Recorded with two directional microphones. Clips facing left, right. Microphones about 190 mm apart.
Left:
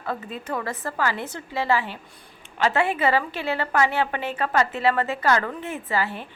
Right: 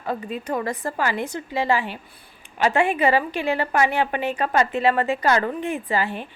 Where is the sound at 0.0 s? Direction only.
15° right (ahead or behind).